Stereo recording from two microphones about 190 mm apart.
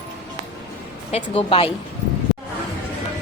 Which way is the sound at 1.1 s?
30° left (ahead or behind).